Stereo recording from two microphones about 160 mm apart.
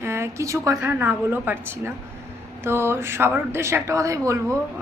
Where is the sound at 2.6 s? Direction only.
15° right (ahead or behind).